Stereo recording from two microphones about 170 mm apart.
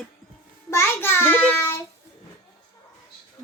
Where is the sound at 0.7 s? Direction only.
15° left (ahead or behind).